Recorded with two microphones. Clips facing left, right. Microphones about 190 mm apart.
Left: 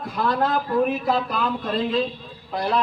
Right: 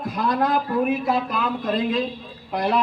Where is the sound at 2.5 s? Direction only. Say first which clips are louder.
Right 2 dB; 20° right (ahead or behind).